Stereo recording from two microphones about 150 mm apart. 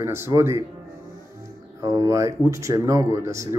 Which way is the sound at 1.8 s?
25° right (ahead or behind).